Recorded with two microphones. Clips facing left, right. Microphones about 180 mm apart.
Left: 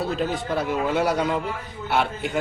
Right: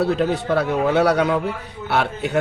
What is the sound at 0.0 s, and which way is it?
A man's voice, 70° right (ahead or behind).